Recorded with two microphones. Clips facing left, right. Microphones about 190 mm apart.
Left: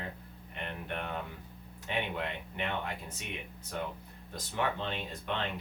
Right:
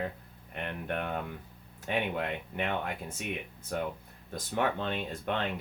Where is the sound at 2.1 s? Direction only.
50° right (ahead or behind).